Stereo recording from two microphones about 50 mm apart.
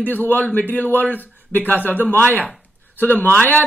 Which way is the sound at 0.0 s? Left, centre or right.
Left.